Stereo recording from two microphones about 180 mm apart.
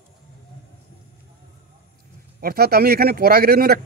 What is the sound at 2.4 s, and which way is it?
Speech, 55° right (ahead or behind).